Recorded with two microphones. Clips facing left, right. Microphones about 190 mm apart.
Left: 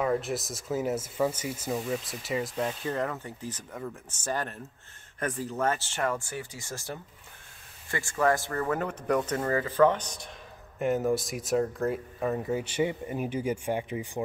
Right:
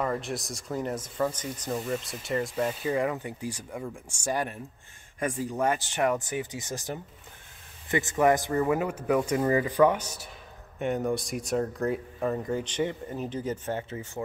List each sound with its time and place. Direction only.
0.0 s a man's voice: centre (ahead or behind)